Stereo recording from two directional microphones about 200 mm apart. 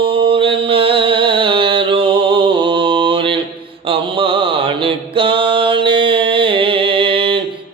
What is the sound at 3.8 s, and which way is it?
Mantra, 25° right (ahead or behind).